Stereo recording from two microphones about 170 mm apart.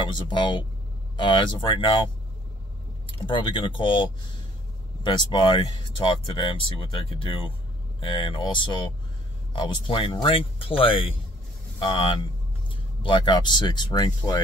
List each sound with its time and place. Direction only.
0.0 s speech: 25° left (ahead or behind)
3.3 s speech: 30° left (ahead or behind)